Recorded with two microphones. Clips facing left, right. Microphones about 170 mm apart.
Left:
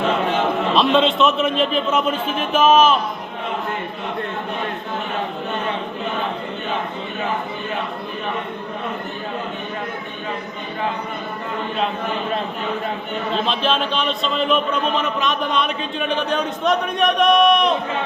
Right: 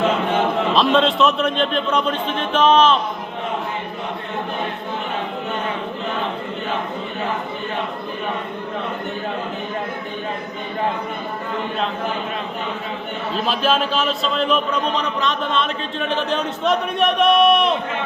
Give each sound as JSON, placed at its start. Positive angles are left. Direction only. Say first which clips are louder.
{"t": 0.7, "sound": "a man's voice", "louder": "left 1 dB", "side_deg": 0}
{"t": 13.3, "sound": "a man's voice", "louder": "right 1 dB", "side_deg": -5}
{"t": 15.0, "sound": "speech", "louder": "left 1 dB", "side_deg": 20}
{"t": 16.6, "sound": "a man's voice", "louder": "even", "side_deg": -5}